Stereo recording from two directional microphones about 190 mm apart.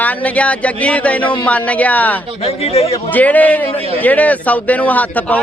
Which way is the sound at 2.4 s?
30° left (ahead or behind).